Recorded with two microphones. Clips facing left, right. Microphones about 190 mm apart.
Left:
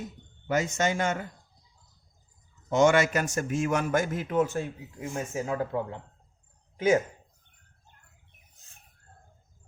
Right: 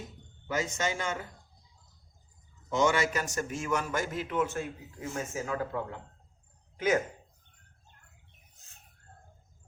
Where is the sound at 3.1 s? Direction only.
50° left (ahead or behind).